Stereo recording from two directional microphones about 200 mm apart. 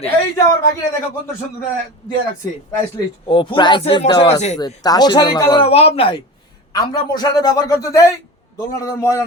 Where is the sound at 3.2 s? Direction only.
25° left (ahead or behind).